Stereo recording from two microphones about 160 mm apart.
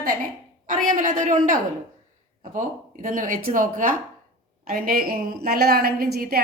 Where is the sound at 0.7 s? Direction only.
55° right (ahead or behind); by 6.4 s 75° right (ahead or behind).